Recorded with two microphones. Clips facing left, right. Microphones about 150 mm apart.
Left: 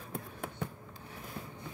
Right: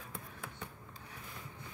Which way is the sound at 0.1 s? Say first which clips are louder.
Left 10 dB; 50° left (ahead or behind).